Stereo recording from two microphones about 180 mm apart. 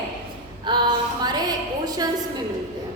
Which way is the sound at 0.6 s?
25° right (ahead or behind).